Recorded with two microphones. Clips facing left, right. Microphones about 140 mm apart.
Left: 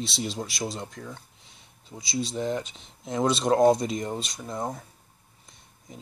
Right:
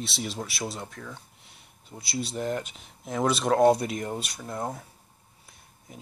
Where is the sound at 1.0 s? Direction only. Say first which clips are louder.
Left 2 dB; 5° left (ahead or behind).